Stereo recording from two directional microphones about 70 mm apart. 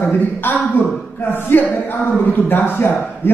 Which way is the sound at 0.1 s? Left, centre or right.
Left.